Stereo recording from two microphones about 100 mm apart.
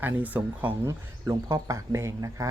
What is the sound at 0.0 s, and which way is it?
Speech, 15° right (ahead or behind).